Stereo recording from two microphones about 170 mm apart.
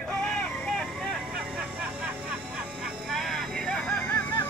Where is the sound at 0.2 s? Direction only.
5° left (ahead or behind).